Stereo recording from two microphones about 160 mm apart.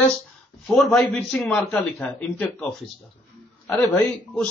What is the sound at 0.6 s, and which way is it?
A man's voice, centre (ahead or behind).